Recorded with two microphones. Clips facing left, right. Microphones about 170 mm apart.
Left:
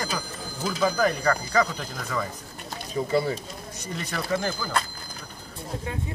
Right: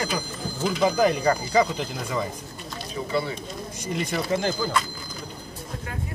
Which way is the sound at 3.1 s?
40° left (ahead or behind).